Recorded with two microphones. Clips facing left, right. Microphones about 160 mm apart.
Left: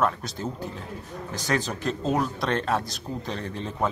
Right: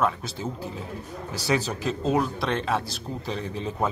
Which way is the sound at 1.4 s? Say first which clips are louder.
Right 1 dB; 5° right (ahead or behind).